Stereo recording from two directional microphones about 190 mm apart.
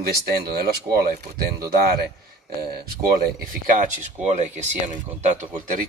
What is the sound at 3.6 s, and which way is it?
Speech, 40° right (ahead or behind).